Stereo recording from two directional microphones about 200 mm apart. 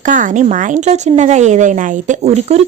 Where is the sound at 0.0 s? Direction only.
40° right (ahead or behind).